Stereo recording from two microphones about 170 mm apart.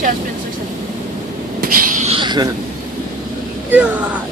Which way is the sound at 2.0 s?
30° right (ahead or behind).